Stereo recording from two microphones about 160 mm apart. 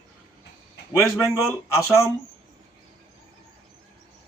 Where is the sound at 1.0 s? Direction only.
20° left (ahead or behind).